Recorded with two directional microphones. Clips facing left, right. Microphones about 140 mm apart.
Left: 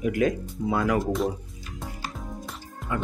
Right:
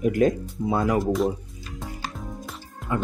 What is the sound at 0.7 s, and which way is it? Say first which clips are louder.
Speech: right 1 dB; 25° right (ahead or behind).